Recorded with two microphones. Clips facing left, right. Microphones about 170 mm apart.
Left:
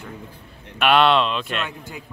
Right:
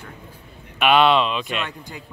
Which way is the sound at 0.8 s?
Centre (ahead or behind).